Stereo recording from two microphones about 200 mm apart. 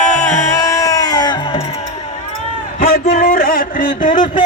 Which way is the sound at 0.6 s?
15° left (ahead or behind).